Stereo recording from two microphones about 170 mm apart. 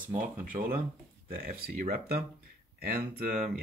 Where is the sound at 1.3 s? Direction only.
60° right (ahead or behind).